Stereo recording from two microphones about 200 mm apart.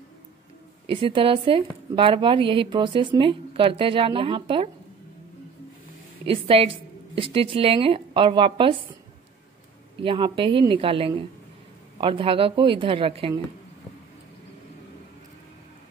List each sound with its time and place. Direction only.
0.8 s speech: 25° right (ahead or behind)
6.2 s speech: 25° right (ahead or behind)
10.0 s speech: 25° right (ahead or behind)